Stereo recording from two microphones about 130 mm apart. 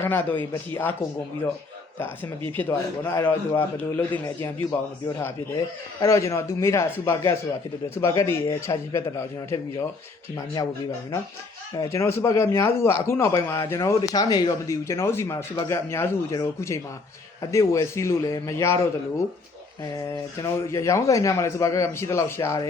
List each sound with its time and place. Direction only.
0.0 s a man's voice: 15° left (ahead or behind)
2.6 s a man's voice: 15° left (ahead or behind)
6.0 s speech: 25° left (ahead or behind)
11.7 s speech: 25° left (ahead or behind)
19.8 s speech: 25° left (ahead or behind)